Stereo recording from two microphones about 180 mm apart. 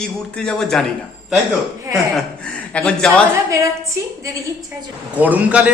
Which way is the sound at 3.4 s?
15° right (ahead or behind).